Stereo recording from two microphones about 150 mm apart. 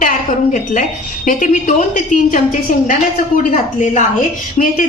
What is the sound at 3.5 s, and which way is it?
A woman's voice, 55° left (ahead or behind).